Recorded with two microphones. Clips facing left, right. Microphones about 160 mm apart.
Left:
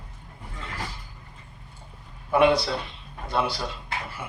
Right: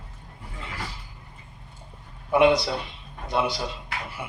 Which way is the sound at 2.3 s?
20° right (ahead or behind).